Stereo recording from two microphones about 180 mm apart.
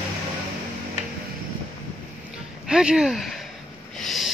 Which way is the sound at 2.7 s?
5° right (ahead or behind).